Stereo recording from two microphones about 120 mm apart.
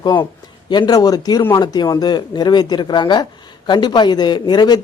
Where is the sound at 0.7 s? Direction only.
35° left (ahead or behind).